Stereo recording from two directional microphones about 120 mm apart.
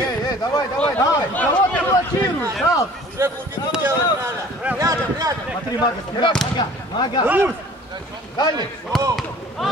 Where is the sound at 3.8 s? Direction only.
20° right (ahead or behind).